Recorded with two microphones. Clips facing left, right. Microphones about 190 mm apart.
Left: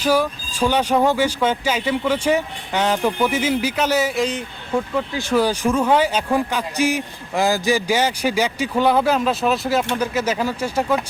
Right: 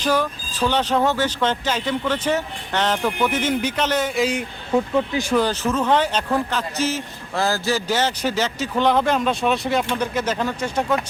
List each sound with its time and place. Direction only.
0.0 s a man's voice: 10° left (ahead or behind)
4.9 s speech: 15° right (ahead or behind)
5.3 s a man's voice: 10° left (ahead or behind)